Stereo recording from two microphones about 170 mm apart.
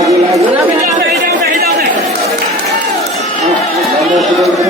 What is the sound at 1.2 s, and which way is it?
Chatter, 65° right (ahead or behind).